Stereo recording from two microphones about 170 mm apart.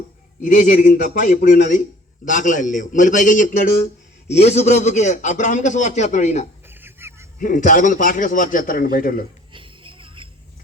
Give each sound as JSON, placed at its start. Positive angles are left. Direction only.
{"t": 0.4, "sound": "a man's voice", "side_deg": 50}
{"t": 6.7, "sound": "a sound", "side_deg": -15}
{"t": 7.3, "sound": "a man's voice", "side_deg": 50}
{"t": 9.5, "sound": "music", "side_deg": -30}